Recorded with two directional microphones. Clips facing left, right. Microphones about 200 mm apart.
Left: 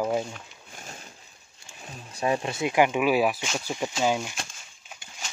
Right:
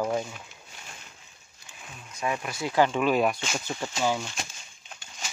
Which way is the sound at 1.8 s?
35° left (ahead or behind).